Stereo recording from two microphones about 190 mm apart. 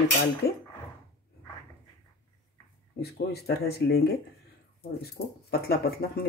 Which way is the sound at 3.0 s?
55° left (ahead or behind).